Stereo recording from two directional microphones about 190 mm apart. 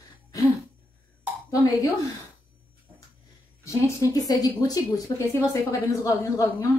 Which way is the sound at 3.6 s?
15° left (ahead or behind).